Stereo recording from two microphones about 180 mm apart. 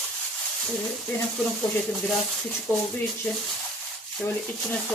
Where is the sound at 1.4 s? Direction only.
Centre (ahead or behind).